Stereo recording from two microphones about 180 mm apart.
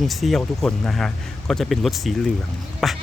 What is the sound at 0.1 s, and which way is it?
Speech, centre (ahead or behind).